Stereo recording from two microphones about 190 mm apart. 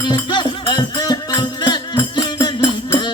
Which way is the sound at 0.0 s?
25° left (ahead or behind).